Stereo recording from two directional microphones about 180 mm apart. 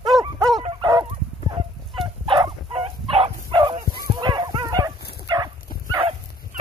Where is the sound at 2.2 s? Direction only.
25° right (ahead or behind).